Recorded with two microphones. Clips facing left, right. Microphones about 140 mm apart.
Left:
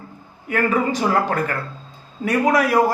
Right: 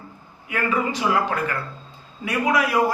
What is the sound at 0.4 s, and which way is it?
A man's voice, 45° left (ahead or behind).